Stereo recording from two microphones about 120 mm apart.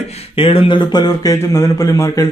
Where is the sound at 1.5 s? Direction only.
25° left (ahead or behind).